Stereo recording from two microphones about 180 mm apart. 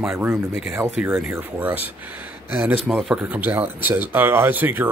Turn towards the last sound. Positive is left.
turn(degrees=-10)  # may be behind; listen again after turning